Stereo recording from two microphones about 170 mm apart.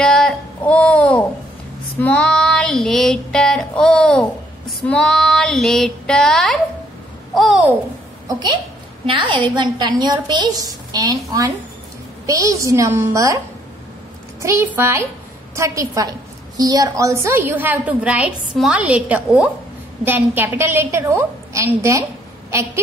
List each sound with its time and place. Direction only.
0.0 s a sound: 5° left (ahead or behind)
2.0 s female singing: 5° left (ahead or behind)
8.3 s a woman's voice: 25° right (ahead or behind)
14.4 s a woman's voice: 15° right (ahead or behind)